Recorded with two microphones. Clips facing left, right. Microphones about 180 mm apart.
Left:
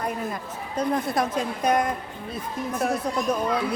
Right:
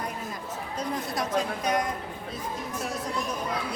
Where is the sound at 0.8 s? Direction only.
55° left (ahead or behind).